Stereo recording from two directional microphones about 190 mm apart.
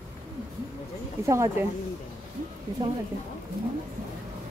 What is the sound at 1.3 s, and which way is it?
Speech, 15° right (ahead or behind).